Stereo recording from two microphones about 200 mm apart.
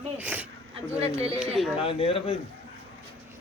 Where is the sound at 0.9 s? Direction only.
30° right (ahead or behind).